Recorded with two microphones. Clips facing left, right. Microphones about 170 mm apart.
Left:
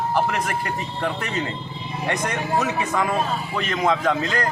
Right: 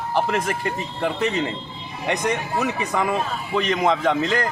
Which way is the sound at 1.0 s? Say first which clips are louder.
Right 5 dB; 20° right (ahead or behind).